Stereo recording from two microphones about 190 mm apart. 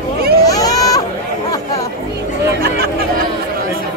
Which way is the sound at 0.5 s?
20° left (ahead or behind).